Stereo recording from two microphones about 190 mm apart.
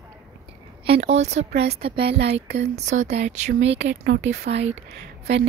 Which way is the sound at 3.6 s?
70° right (ahead or behind).